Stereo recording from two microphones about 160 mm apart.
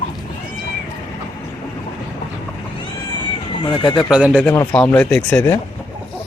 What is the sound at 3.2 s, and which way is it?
Cat, 30° left (ahead or behind).